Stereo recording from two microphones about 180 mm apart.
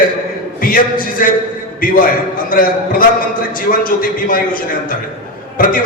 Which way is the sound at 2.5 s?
50° left (ahead or behind).